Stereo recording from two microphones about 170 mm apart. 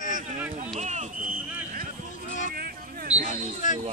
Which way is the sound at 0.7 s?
45° right (ahead or behind).